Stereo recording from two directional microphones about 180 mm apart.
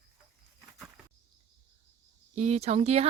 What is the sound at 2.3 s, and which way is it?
Speech, 40° right (ahead or behind).